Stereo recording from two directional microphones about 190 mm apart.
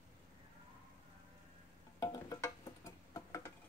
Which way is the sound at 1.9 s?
20° left (ahead or behind).